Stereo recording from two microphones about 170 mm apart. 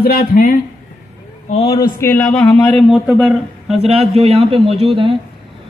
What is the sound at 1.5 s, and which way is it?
Speech, 35° left (ahead or behind).